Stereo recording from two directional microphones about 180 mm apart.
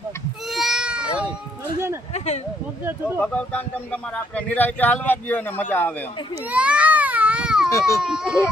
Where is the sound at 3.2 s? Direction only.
5° left (ahead or behind).